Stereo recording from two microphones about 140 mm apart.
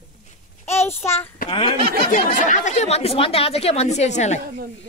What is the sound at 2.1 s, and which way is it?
Speech, 65° left (ahead or behind).